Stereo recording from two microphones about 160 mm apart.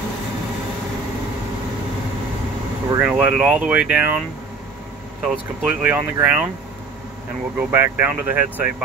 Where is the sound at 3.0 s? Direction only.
5° right (ahead or behind).